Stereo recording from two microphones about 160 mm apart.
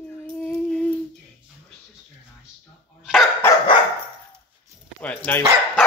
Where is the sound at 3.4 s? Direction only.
15° left (ahead or behind).